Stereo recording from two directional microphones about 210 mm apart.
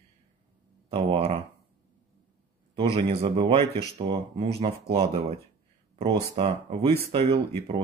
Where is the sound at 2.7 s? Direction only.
25° right (ahead or behind).